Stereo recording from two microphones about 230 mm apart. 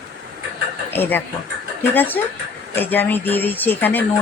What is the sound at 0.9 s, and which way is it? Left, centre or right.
Speech, centre.